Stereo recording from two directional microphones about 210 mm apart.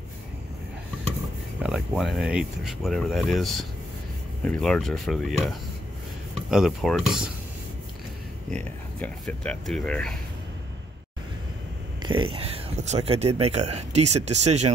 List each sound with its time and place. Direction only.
1.6 s speech: centre (ahead or behind)
8.5 s speech: 5° left (ahead or behind)
12.0 s speech: 20° right (ahead or behind)